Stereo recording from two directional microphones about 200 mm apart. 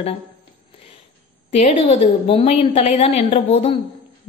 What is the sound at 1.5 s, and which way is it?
A woman's voice, 30° left (ahead or behind).